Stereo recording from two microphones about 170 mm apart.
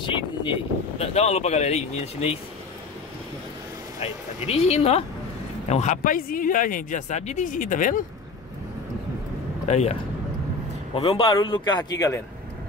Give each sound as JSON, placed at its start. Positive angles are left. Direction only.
{"t": 0.0, "sound": "speech", "side_deg": 30}
{"t": 4.0, "sound": "speech", "side_deg": 40}
{"t": 9.7, "sound": "speech", "side_deg": 40}
{"t": 11.0, "sound": "speech", "side_deg": 35}